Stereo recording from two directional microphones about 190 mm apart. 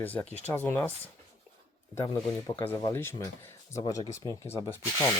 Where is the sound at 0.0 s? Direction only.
10° left (ahead or behind).